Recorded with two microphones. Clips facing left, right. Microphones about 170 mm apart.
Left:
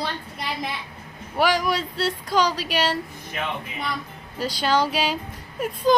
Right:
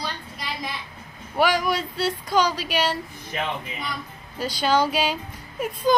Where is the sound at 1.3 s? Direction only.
Centre (ahead or behind).